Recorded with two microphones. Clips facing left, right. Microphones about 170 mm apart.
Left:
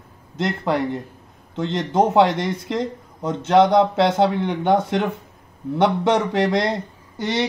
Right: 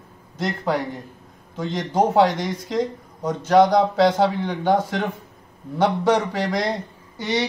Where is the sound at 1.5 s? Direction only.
25° left (ahead or behind).